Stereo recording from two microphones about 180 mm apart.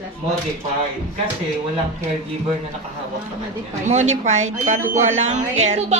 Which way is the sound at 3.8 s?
40° right (ahead or behind).